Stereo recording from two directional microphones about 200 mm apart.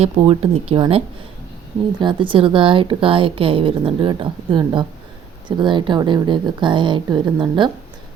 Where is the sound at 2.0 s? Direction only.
25° right (ahead or behind).